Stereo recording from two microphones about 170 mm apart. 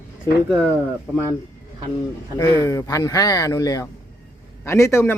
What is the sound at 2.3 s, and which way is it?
Speech, 20° left (ahead or behind).